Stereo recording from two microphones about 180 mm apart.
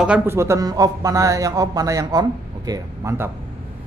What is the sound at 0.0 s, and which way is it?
Speech, 10° right (ahead or behind).